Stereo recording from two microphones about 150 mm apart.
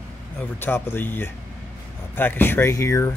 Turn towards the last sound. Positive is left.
turn(degrees=20)  # may be behind; listen again after turning